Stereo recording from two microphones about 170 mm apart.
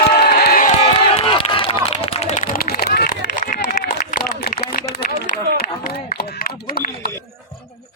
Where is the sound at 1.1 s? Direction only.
35° left (ahead or behind); by 3.1 s 65° left (ahead or behind).